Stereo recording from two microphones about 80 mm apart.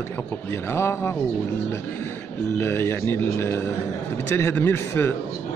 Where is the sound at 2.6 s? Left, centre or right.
Left.